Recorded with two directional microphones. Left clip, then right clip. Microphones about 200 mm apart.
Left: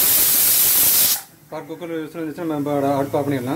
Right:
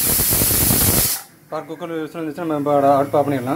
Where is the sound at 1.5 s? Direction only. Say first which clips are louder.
Right 2 dB; centre (ahead or behind).